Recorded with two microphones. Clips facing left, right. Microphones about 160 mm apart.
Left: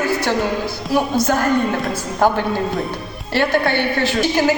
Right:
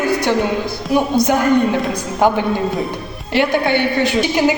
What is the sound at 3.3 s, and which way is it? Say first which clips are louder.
Music: right 2 dB; 15° right (ahead or behind).